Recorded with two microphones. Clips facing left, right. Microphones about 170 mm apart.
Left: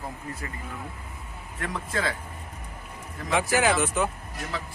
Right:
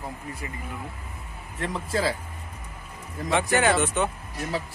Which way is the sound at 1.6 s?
30° right (ahead or behind).